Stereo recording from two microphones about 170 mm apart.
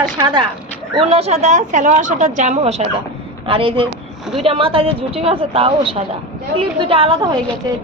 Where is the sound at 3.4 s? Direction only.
30° right (ahead or behind).